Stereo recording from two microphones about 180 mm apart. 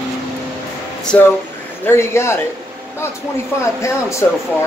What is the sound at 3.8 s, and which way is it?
Speech, 15° left (ahead or behind).